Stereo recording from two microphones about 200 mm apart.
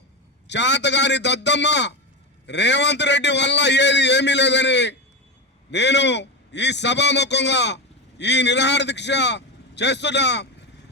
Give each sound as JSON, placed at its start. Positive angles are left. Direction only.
{"t": 0.4, "sound": "a man's voice", "side_deg": 60}